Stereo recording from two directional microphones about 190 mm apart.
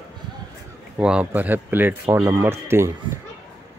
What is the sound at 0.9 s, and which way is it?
Speech, 5° right (ahead or behind).